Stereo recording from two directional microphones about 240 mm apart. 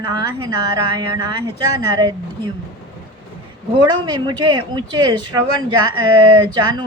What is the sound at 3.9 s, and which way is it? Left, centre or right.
Speech, centre.